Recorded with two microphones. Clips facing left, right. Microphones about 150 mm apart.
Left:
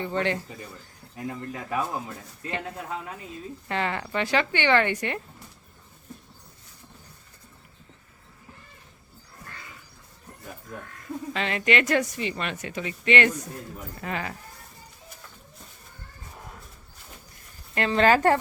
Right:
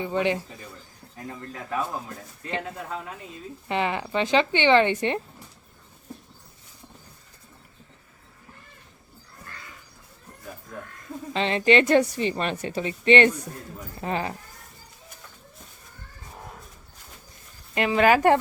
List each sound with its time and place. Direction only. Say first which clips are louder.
0.0 s speech: right 2 dB; 15° right (ahead or behind)
1.1 s speech: left 4 dB; 10° left (ahead or behind)
3.7 s speech: right 3 dB; 20° right (ahead or behind)
11.3 s a woman's voice: right 5 dB; 30° right (ahead or behind)
17.7 s speech: right 1 dB; 10° right (ahead or behind)